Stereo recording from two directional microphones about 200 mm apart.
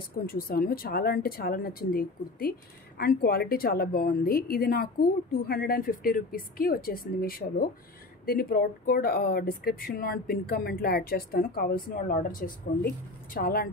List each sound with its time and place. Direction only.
0.3 s speech: 45° left (ahead or behind)